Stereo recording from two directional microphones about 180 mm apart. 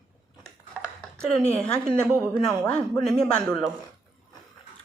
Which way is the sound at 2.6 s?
5° left (ahead or behind).